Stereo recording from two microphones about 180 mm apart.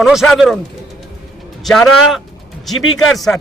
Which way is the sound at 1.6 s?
Centre (ahead or behind).